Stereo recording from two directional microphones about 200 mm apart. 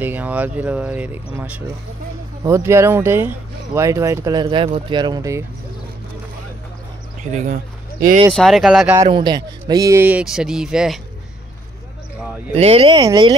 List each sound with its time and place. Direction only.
0.0 s speech: 10° right (ahead or behind)
8.4 s speech: centre (ahead or behind)
8.9 s speech: 20° right (ahead or behind); by 11.0 s 5° right (ahead or behind)
12.5 s speech: 30° right (ahead or behind)